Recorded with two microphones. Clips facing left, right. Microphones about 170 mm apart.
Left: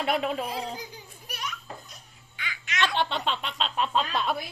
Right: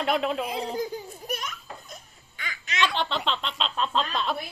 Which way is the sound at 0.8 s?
45° right (ahead or behind).